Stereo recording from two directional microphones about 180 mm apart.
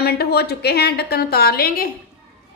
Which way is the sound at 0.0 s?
60° left (ahead or behind).